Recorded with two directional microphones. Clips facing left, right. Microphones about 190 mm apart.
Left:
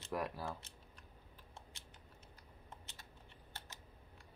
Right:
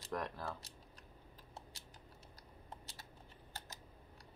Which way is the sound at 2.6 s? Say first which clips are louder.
Right 3 dB; 35° right (ahead or behind).